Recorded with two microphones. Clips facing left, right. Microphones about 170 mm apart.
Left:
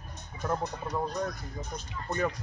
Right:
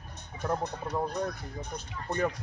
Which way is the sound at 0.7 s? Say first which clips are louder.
Right 1 dB; 60° right (ahead or behind).